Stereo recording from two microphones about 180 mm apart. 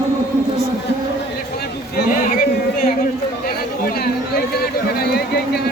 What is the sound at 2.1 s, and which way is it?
Speech, 50° left (ahead or behind).